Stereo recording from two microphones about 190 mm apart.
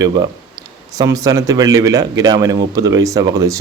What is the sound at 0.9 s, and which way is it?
Speech, 20° right (ahead or behind).